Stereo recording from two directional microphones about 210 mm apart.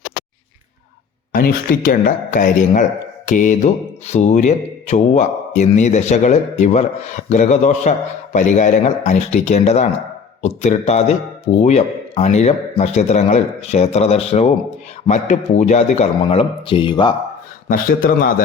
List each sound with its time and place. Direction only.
1.3 s a man's voice: 45° left (ahead or behind); by 17.2 s 20° left (ahead or behind)
17.7 s a man's voice: 40° left (ahead or behind)